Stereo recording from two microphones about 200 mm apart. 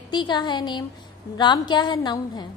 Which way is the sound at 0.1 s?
20° left (ahead or behind).